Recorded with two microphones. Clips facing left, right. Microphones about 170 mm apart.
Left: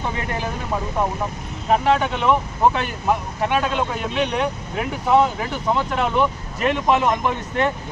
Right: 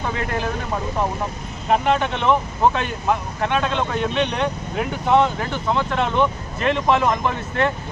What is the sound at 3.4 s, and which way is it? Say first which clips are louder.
Speech: even; 10° left (ahead or behind).